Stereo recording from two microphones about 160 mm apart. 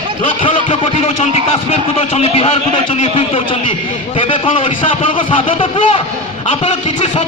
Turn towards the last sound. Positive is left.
turn(degrees=35)  # may be behind; listen again after turning